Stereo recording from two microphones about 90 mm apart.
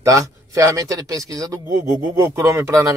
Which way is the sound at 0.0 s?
35° right (ahead or behind).